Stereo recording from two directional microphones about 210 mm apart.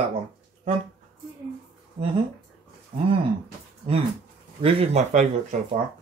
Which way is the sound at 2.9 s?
40° right (ahead or behind).